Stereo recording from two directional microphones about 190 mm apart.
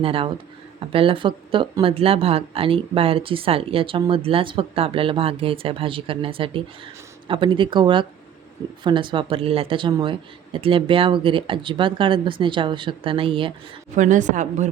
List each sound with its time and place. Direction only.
0.0 s speech: 30° right (ahead or behind)
13.9 s a woman's voice: 40° right (ahead or behind)